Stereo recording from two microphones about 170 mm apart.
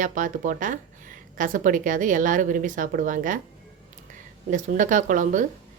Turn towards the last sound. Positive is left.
turn(degrees=-50)  # may be behind; listen again after turning